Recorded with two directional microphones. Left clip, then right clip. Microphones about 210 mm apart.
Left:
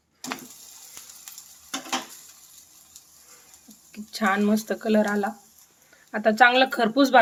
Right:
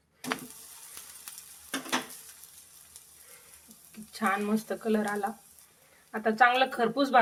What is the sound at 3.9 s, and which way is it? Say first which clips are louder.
Speech: left 5 dB; 45° left (ahead or behind).